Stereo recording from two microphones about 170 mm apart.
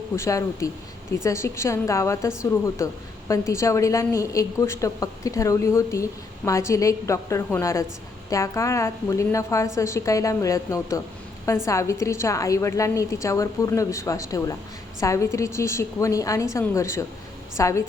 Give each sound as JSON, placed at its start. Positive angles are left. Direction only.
{"t": 0.2, "sound": "a woman's voice", "side_deg": 20}